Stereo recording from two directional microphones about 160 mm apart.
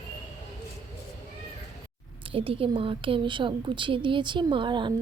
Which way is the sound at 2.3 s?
35° right (ahead or behind).